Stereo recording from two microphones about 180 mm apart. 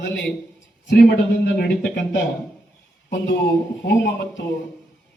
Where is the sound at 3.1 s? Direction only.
75° left (ahead or behind).